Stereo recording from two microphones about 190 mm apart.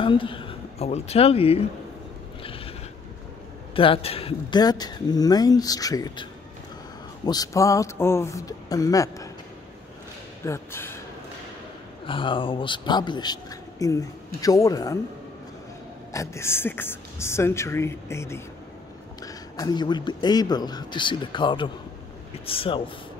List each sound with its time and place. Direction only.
0.0 s speech: 25° left (ahead or behind)
2.4 s a sound: 30° left (ahead or behind)
3.7 s speech: 30° left (ahead or behind)
7.2 s a woman's voice: 20° left (ahead or behind)
10.4 s a woman's voice: 15° left (ahead or behind)
12.1 s speech: 25° left (ahead or behind)
16.1 s a woman's voice: 15° left (ahead or behind)